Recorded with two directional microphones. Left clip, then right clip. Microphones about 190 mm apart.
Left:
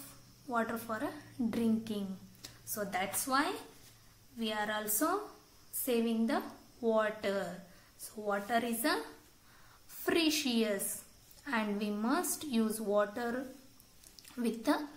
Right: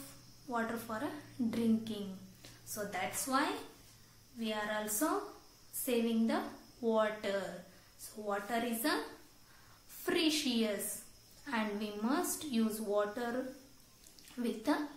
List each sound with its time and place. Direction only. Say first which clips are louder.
0.5 s a woman's voice: left 3 dB; 30° left (ahead or behind)
9.9 s a woman's voice: left 2 dB; 25° left (ahead or behind)